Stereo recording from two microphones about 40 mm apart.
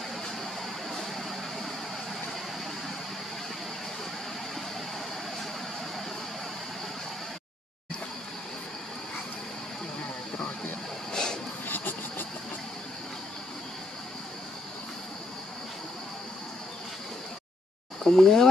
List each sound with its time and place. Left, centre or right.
0.9 s vehicle: centre
11.1 s a sound: centre
11.6 s vehicle: left
18.0 s speech: centre